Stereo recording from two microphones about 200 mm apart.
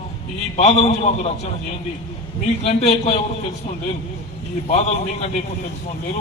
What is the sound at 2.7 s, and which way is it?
Speech, 30° left (ahead or behind).